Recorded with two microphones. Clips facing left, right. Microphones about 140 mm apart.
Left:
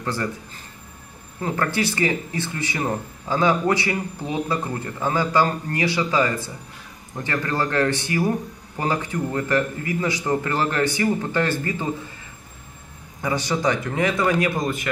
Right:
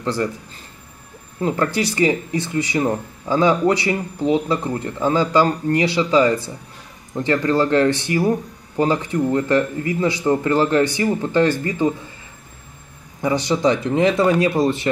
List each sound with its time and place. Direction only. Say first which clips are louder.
0.0 s speech: right 5 dB; 20° right (ahead or behind)
1.4 s speech: right 4 dB; 20° right (ahead or behind)
13.2 s speech: right 5 dB; 20° right (ahead or behind)